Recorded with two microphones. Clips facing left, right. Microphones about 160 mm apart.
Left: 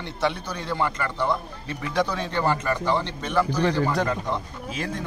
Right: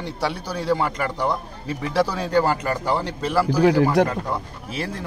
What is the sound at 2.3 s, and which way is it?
Speech, 40° right (ahead or behind).